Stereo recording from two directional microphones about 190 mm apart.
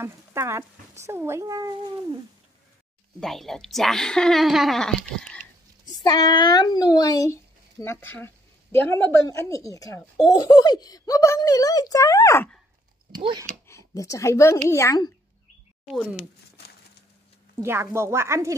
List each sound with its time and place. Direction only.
0.0 s speech: 15° right (ahead or behind)
3.2 s speech: centre (ahead or behind)
6.0 s speech: 20° left (ahead or behind)
13.2 s speech: 25° right (ahead or behind)
13.7 s speech: 15° left (ahead or behind)
15.8 s speech: centre (ahead or behind)
17.6 s speech: 15° right (ahead or behind)